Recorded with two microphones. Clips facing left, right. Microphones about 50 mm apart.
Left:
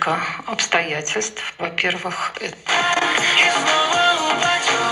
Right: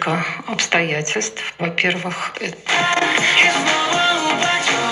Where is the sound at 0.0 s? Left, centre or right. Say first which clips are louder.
Even; right.